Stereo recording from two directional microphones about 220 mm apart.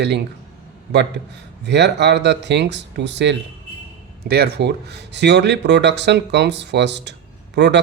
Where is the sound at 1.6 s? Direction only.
50° right (ahead or behind).